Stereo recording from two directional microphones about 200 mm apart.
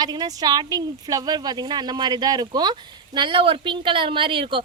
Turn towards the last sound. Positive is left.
turn(degrees=-25)  # may be behind; listen again after turning